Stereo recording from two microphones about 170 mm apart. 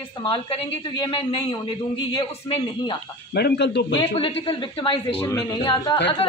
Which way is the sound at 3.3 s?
70° left (ahead or behind).